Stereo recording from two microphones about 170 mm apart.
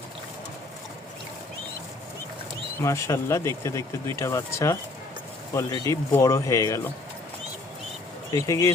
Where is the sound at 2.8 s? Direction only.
15° left (ahead or behind).